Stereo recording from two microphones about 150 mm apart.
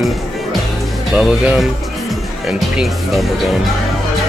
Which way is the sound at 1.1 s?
5° right (ahead or behind).